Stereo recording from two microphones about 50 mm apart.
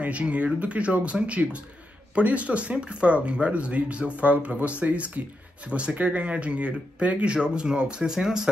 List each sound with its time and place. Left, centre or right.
0.0 s speech: right; by 8.5 s centre